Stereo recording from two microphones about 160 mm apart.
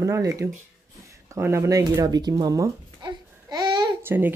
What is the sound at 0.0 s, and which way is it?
Speech, 20° right (ahead or behind).